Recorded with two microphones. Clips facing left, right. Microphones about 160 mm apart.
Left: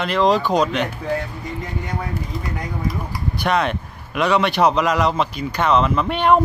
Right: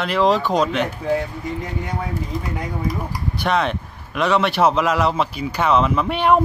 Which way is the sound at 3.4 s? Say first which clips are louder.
Even; centre (ahead or behind).